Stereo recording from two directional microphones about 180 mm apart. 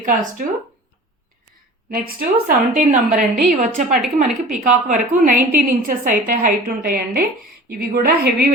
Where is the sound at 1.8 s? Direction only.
55° right (ahead or behind).